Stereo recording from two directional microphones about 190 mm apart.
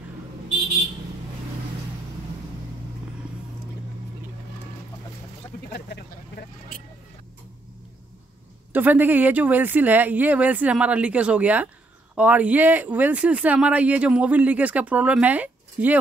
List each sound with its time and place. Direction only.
5.7 s vehicle: 60° left (ahead or behind)
8.7 s speech: 10° right (ahead or behind)